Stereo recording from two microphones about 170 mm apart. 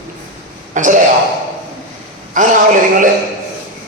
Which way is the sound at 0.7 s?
50° right (ahead or behind).